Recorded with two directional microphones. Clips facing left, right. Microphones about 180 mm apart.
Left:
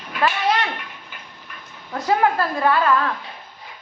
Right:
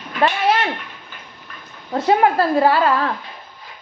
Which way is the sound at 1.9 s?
25° right (ahead or behind).